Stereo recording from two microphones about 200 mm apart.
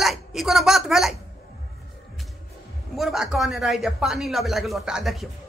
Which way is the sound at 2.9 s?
Centre (ahead or behind).